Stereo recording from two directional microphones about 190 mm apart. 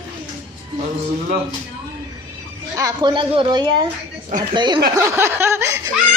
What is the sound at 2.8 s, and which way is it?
A woman's voice, 20° right (ahead or behind).